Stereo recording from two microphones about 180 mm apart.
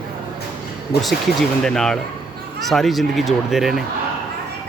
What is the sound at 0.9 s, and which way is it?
Speech, 60° left (ahead or behind).